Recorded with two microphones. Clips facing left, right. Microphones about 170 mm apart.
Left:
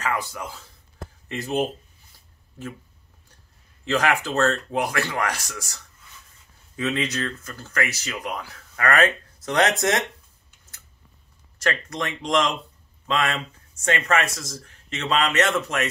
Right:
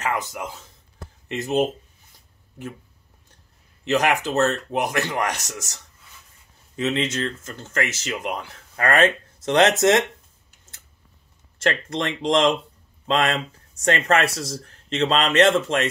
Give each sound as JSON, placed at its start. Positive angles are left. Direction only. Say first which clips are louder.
{"t": 0.0, "sound": "speech", "louder": "right 1 dB", "side_deg": -20}
{"t": 3.8, "sound": "speech", "louder": "right 2 dB", "side_deg": -20}
{"t": 6.8, "sound": "speech", "louder": "right 2 dB", "side_deg": -25}
{"t": 11.5, "sound": "speech", "louder": "right 3 dB", "side_deg": -30}